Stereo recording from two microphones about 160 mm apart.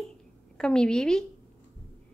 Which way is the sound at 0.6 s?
5° left (ahead or behind).